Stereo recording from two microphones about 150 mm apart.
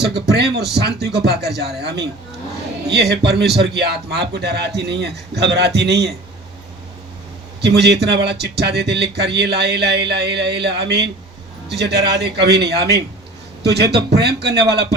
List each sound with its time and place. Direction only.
0.0 s a man's voice: 90° right
7.6 s a man's voice: 90° right